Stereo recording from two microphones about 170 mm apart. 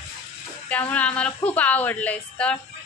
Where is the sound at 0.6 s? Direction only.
10° left (ahead or behind).